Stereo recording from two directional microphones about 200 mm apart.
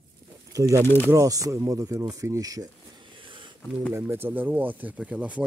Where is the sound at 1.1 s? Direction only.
15° right (ahead or behind).